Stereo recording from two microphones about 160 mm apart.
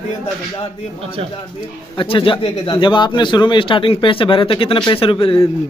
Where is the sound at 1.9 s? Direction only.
35° left (ahead or behind).